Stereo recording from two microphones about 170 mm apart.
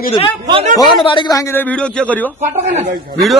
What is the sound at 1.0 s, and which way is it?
A man's voice, 30° left (ahead or behind).